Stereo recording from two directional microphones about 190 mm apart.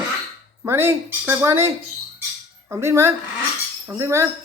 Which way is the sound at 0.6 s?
15° right (ahead or behind).